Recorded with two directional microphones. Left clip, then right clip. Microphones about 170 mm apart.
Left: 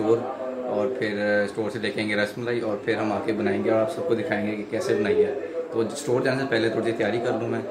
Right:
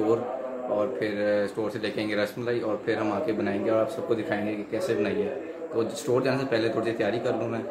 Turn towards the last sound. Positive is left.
turn(degrees=-5)  # may be behind; listen again after turning